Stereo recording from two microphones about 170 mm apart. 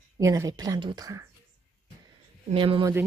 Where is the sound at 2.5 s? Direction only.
30° right (ahead or behind).